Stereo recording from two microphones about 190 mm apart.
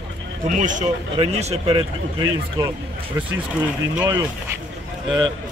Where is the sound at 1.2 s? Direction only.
30° right (ahead or behind).